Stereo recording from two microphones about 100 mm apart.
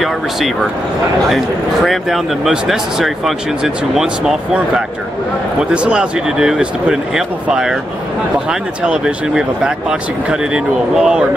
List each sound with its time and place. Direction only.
1.9 s speech: centre (ahead or behind)
5.6 s speech: 10° right (ahead or behind)